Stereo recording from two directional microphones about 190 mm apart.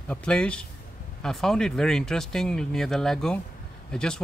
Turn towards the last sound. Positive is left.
turn(degrees=5)  # may be behind; listen again after turning